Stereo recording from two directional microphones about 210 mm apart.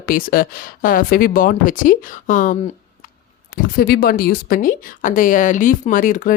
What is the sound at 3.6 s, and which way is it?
Speech, 45° left (ahead or behind).